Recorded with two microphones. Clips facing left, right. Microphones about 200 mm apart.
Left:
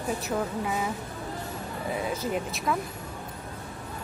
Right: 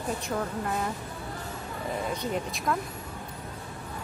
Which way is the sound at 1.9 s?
5° left (ahead or behind).